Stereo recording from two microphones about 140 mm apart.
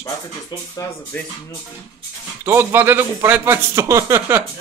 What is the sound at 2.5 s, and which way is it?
Music, 15° right (ahead or behind).